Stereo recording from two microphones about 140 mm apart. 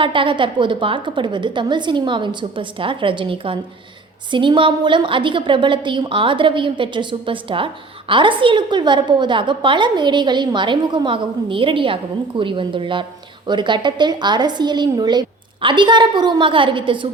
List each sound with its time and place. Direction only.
0.0 s a woman's voice: 35° right (ahead or behind)